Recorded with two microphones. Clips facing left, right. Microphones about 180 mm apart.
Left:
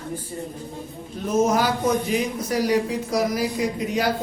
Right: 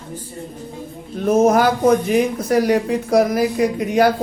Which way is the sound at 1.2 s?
55° right (ahead or behind).